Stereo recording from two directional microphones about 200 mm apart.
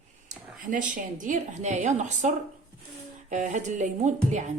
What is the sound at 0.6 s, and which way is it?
Speech, 40° right (ahead or behind).